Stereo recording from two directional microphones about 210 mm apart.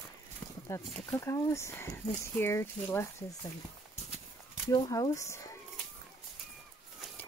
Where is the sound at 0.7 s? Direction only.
10° left (ahead or behind).